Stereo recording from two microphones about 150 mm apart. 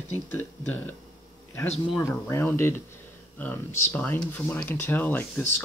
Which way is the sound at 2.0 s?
15° left (ahead or behind).